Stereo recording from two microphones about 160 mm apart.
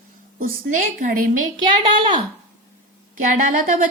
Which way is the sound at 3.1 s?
55° right (ahead or behind).